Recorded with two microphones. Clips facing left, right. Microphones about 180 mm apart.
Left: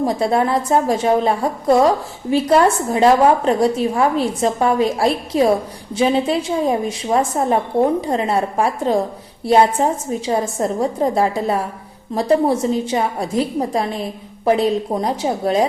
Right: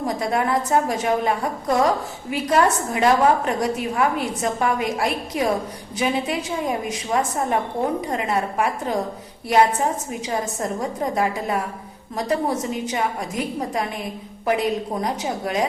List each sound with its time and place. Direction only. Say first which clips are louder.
0.0 s a woman's voice: left 5 dB; 30° left (ahead or behind)